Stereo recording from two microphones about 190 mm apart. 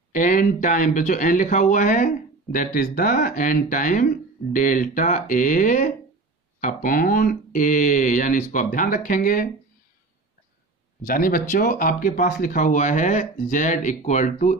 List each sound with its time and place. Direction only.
0.1 s speech: 45° left (ahead or behind)
11.1 s speech: 45° left (ahead or behind)